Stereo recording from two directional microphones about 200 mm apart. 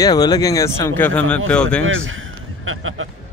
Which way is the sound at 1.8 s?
80° right.